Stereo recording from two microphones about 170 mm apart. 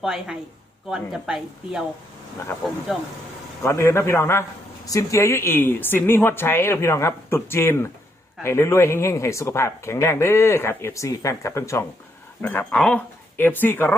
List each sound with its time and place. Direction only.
0.0 s a woman's voice: 5° right (ahead or behind)
2.9 s a woman's voice: centre (ahead or behind)
3.6 s speech: 15° left (ahead or behind)